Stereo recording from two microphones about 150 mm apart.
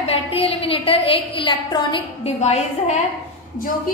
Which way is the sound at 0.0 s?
40° left (ahead or behind).